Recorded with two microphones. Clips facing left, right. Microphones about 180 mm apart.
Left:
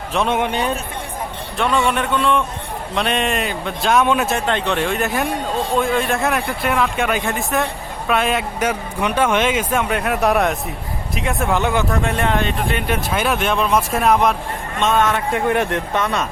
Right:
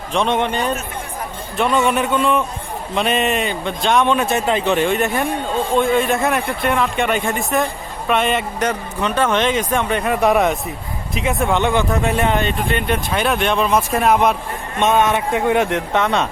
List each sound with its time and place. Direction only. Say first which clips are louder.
0.1 s a man's voice: right 1 dB; 5° left (ahead or behind)
1.5 s speech: right 2 dB; 5° right (ahead or behind)
14.8 s a man's voice: right 2 dB; 20° right (ahead or behind)